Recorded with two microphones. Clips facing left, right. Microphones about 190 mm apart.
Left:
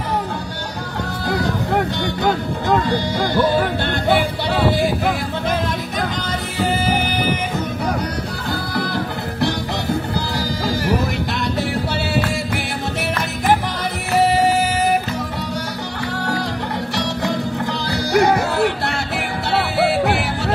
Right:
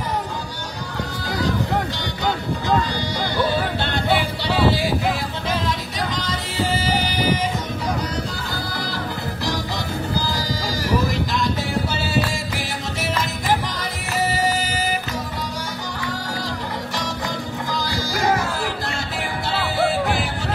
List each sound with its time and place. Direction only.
2.9 s music: 55° left (ahead or behind)
4.6 s a sound: 50° left (ahead or behind)
6.6 s music: 55° left (ahead or behind)
8.7 s music: 65° left (ahead or behind)
13.5 s music: 60° left (ahead or behind)
16.9 s music: 65° left (ahead or behind)